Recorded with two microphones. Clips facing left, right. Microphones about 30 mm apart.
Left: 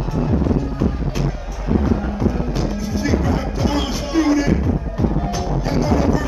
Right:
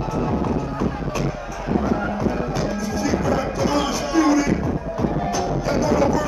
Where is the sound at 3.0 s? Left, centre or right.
Left.